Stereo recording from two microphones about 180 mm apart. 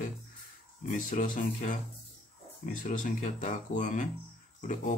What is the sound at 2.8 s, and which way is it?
Speech, 45° left (ahead or behind).